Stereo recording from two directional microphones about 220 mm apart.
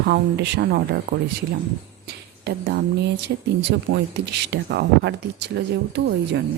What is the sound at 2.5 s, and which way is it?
Speech, 50° right (ahead or behind).